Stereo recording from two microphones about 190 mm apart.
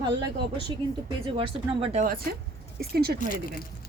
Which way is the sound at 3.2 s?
45° left (ahead or behind).